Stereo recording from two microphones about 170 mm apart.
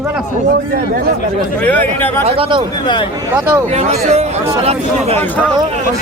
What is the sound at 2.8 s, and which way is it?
Speech, 25° left (ahead or behind).